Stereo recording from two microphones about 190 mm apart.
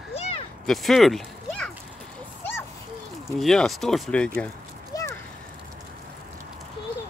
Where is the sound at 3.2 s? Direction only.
Centre (ahead or behind).